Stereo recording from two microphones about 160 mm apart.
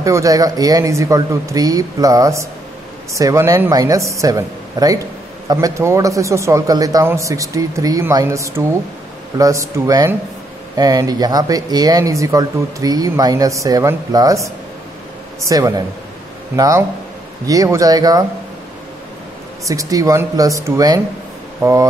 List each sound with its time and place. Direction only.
0.0 s speech: 20° right (ahead or behind)
19.7 s speech: 20° right (ahead or behind)